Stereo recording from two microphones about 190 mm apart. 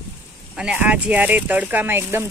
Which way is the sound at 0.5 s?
5° right (ahead or behind).